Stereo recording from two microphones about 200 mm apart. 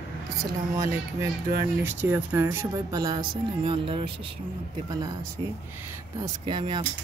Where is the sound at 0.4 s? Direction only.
15° right (ahead or behind).